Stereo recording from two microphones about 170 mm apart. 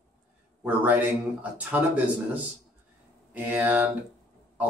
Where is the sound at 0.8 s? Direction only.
10° right (ahead or behind).